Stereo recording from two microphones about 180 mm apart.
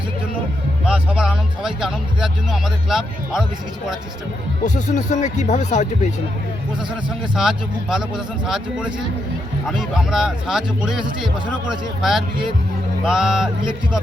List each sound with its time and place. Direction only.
0.9 s speech: 5° right (ahead or behind)
4.6 s speech: 45° left (ahead or behind)
7.3 s speech: 5° right (ahead or behind)